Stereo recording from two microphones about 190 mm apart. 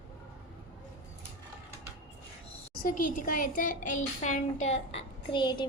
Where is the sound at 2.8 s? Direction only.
45° left (ahead or behind); by 5.7 s 25° left (ahead or behind).